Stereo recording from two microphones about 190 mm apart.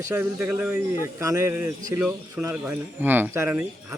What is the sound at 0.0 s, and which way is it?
A man's voice, 10° right (ahead or behind).